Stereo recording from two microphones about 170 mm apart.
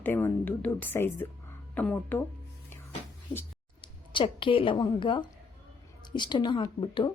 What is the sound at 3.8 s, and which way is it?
A woman's voice, 30° left (ahead or behind).